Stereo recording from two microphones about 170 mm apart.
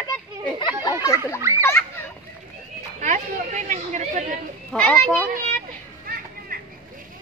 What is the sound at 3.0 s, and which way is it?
Speech, 45° right (ahead or behind).